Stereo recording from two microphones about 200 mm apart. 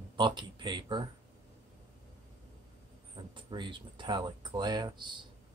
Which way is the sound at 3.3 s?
25° right (ahead or behind).